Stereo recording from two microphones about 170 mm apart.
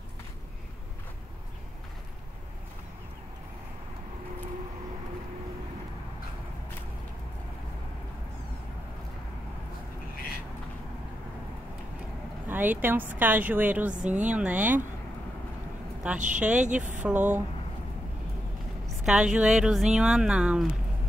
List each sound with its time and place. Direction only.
12.4 s a woman's voice: 10° right (ahead or behind)
16.0 s a woman's voice: 10° right (ahead or behind)
16.6 s speech: 45° right (ahead or behind)
17.0 s a woman's voice: 10° right (ahead or behind)
19.0 s speech: 5° right (ahead or behind)